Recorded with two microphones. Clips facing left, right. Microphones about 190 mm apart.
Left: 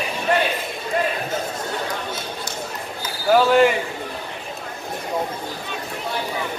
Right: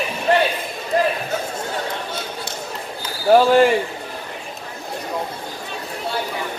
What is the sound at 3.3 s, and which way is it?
Speech, 35° right (ahead or behind).